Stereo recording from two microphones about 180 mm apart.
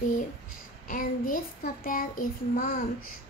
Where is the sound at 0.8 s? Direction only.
50° left (ahead or behind).